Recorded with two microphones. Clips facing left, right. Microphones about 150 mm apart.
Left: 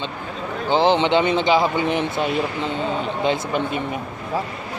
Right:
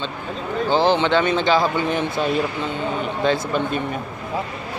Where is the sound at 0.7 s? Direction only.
20° left (ahead or behind).